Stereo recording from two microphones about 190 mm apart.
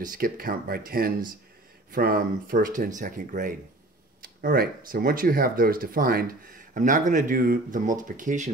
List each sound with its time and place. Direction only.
0.0 s speech: 45° right (ahead or behind)